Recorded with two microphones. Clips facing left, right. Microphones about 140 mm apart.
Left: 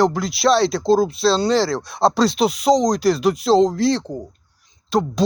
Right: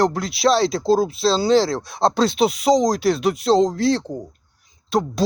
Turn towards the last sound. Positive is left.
turn(degrees=0)  # may be behind; listen again after turning